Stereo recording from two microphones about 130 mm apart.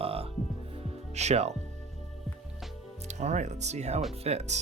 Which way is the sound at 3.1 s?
60° right (ahead or behind).